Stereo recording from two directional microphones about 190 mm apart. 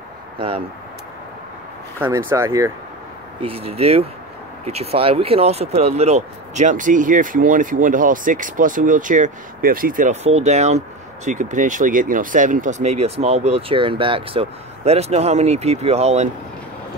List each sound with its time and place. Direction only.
2.0 s speech: 10° right (ahead or behind)
3.3 s speech: 30° right (ahead or behind)